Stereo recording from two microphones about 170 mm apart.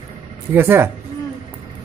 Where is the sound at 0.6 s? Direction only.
15° right (ahead or behind).